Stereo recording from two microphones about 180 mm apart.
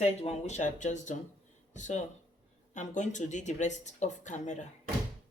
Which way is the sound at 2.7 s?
40° left (ahead or behind).